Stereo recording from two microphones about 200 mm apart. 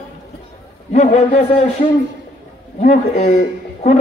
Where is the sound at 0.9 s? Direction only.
35° left (ahead or behind).